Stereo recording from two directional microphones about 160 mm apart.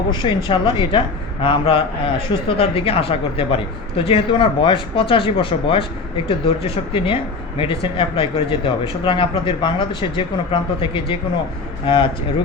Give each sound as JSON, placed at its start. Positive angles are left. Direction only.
{"t": 0.1, "sound": "speech", "side_deg": 30}